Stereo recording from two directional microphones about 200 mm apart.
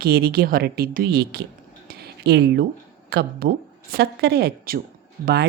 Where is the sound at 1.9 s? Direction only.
50° right (ahead or behind).